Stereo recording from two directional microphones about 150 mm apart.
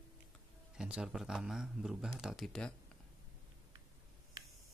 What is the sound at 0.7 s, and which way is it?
Speech, 5° right (ahead or behind).